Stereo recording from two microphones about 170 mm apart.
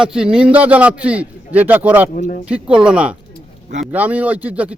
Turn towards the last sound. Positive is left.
turn(degrees=-10)  # may be behind; listen again after turning